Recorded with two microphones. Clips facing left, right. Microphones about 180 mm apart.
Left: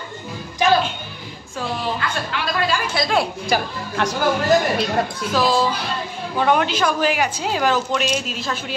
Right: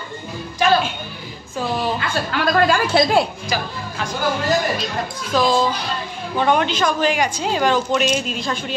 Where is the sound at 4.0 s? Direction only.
65° left (ahead or behind).